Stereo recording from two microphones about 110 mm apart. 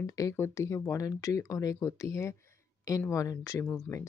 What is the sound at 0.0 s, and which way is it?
Speech, 30° left (ahead or behind).